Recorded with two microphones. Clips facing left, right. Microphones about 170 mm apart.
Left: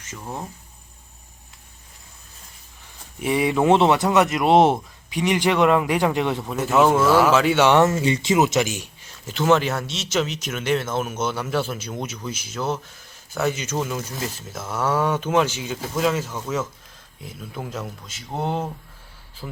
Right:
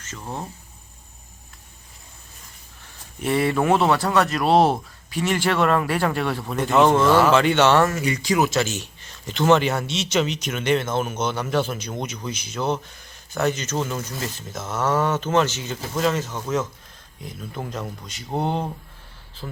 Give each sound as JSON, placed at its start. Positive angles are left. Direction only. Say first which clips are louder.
{"t": 0.0, "sound": "speech", "louder": "even", "side_deg": 10}
{"t": 3.2, "sound": "speech", "louder": "left 1 dB", "side_deg": 10}